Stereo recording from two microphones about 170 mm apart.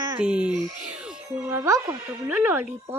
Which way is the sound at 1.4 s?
15° right (ahead or behind).